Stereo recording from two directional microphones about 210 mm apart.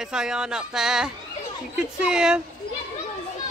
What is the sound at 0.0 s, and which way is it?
Speech, 5° right (ahead or behind).